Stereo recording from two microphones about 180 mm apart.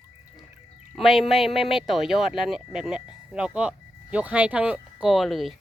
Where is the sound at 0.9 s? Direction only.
Centre (ahead or behind).